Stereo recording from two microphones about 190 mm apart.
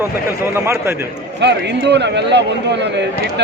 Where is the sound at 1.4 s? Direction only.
65° right (ahead or behind).